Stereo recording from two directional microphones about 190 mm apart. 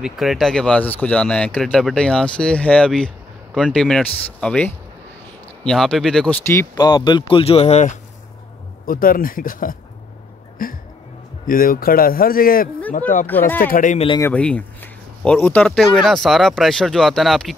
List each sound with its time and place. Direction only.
0.0 s speech: centre (ahead or behind); by 8.0 s 35° left (ahead or behind)
8.8 s a man's voice: 50° left (ahead or behind)
13.3 s speech: 10° left (ahead or behind)
13.7 s a man's voice: 45° left (ahead or behind)
14.2 s speech: 5° left (ahead or behind)